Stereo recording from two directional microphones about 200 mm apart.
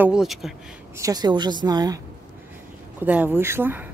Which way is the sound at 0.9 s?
20° right (ahead or behind).